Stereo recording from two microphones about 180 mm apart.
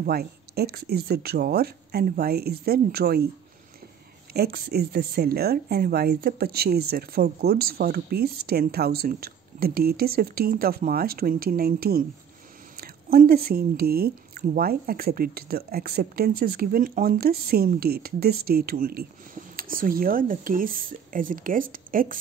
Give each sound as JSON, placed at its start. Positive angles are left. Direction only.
{"t": 0.0, "sound": "speech", "side_deg": -60}
{"t": 4.3, "sound": "speech", "side_deg": -60}